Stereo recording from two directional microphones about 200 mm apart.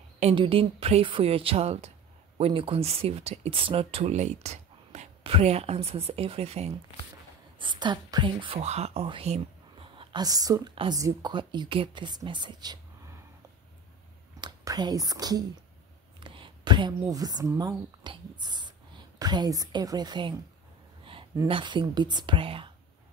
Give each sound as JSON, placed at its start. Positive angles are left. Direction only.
{"t": 0.2, "sound": "speech", "side_deg": -25}
{"t": 14.4, "sound": "speech", "side_deg": -20}